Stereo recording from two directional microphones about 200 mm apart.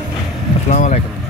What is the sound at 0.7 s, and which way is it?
Vehicle, 40° left (ahead or behind).